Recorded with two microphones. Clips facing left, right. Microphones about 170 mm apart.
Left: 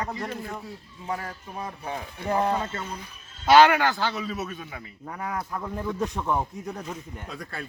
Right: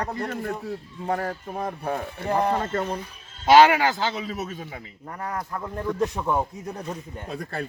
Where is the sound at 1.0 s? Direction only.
55° right (ahead or behind).